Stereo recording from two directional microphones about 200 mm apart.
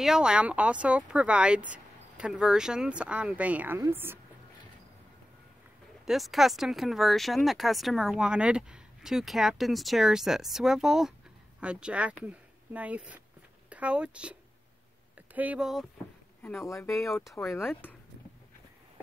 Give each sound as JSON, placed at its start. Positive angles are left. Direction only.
{"t": 0.0, "sound": "speech", "side_deg": -5}
{"t": 6.0, "sound": "speech", "side_deg": 0}
{"t": 15.3, "sound": "speech", "side_deg": -5}
{"t": 16.6, "sound": "speech", "side_deg": 15}
{"t": 16.9, "sound": "speech", "side_deg": 0}